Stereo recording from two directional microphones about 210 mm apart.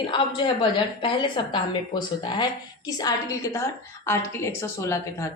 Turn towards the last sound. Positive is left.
turn(degrees=15)  # may be behind; listen again after turning